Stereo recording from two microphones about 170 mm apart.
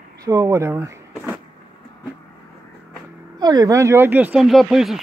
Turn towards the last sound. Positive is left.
turn(degrees=0)  # may be behind; listen again after turning